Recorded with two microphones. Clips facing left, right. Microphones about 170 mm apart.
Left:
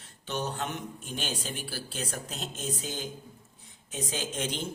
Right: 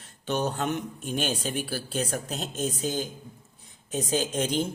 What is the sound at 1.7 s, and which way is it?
Speech, 45° right (ahead or behind).